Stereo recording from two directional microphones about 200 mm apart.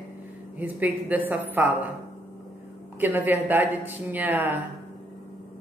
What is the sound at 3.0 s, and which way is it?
Speech, 10° right (ahead or behind).